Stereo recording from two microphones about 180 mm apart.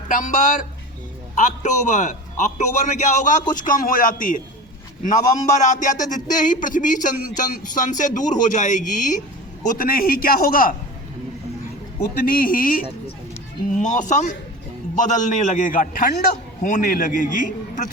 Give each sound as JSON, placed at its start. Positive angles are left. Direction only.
{"t": 0.1, "sound": "speech", "side_deg": 45}
{"t": 5.5, "sound": "speech", "side_deg": 40}
{"t": 12.1, "sound": "speech", "side_deg": 55}